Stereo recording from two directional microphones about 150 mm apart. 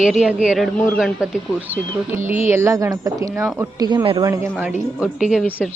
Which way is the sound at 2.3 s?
15° right (ahead or behind).